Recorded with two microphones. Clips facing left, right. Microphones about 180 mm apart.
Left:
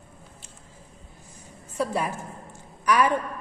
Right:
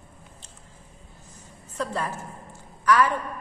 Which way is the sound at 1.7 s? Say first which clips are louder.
Left 3 dB; 10° left (ahead or behind).